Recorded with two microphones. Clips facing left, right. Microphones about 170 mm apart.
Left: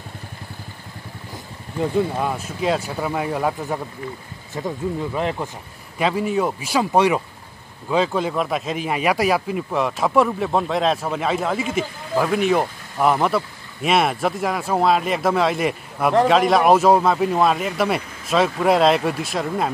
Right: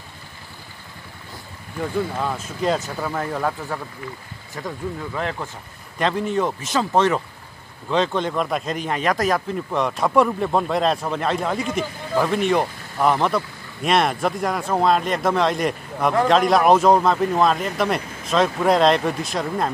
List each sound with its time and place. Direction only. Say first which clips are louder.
1.8 s speech: left 3 dB; 15° left (ahead or behind)
5.9 s speech: left 1 dB; 5° left (ahead or behind)